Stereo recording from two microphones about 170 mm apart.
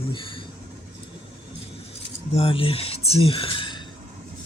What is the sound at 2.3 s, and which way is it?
Speech, 35° left (ahead or behind).